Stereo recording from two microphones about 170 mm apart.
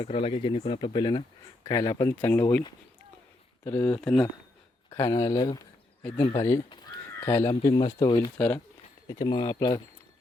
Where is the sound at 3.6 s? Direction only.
10° left (ahead or behind).